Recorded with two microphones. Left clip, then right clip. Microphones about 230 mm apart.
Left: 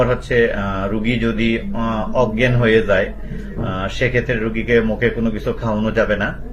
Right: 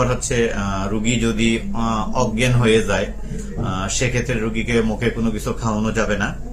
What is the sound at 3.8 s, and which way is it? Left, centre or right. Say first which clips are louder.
Speech: left 4 dB; right.